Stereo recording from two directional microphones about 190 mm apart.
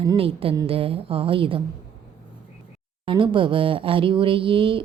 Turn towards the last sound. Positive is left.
turn(degrees=-25)  # may be behind; listen again after turning